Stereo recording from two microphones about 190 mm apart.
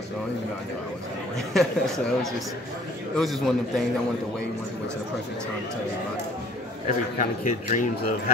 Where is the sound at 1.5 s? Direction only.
Centre (ahead or behind).